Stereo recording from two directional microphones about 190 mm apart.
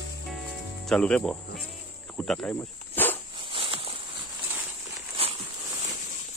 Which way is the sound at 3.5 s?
25° right (ahead or behind).